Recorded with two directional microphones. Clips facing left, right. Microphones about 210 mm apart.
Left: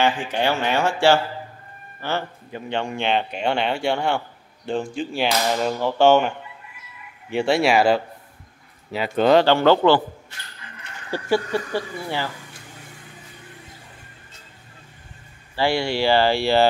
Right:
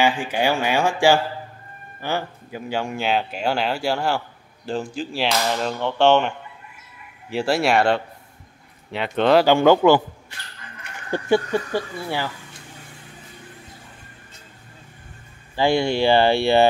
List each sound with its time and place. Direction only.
0.0 s speech: 10° right (ahead or behind)
9.4 s speech: 10° right (ahead or behind)
11.1 s speech: 20° right (ahead or behind)
15.5 s speech: 20° right (ahead or behind)